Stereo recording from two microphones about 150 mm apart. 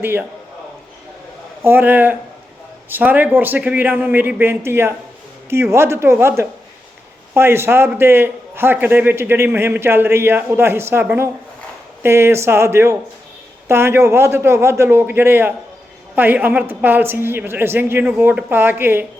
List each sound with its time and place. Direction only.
0.0 s a man's voice: 15° right (ahead or behind)
1.6 s a man's voice: 15° right (ahead or behind)